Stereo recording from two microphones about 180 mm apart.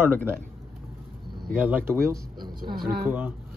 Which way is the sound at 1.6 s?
10° right (ahead or behind).